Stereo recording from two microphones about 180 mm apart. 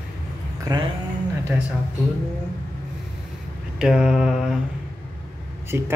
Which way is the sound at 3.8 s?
5° right (ahead or behind).